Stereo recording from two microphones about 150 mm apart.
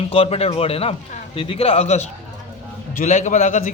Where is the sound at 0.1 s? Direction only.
40° left (ahead or behind).